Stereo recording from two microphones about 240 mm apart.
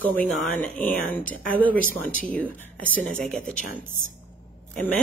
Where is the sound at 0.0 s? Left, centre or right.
Centre.